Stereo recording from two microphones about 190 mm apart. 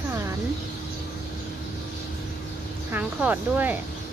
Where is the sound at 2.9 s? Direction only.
10° right (ahead or behind).